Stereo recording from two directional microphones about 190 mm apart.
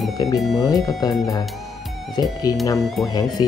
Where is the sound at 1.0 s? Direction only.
20° left (ahead or behind).